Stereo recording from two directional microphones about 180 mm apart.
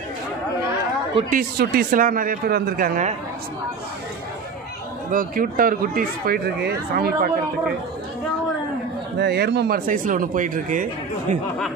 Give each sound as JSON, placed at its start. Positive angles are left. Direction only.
{"t": 1.6, "sound": "speech", "side_deg": -55}
{"t": 5.1, "sound": "speech", "side_deg": -50}
{"t": 9.2, "sound": "speech", "side_deg": -65}
{"t": 9.8, "sound": "speech", "side_deg": -50}